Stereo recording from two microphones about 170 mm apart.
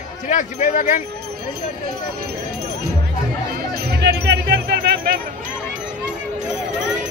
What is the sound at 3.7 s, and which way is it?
Music, 75° right (ahead or behind).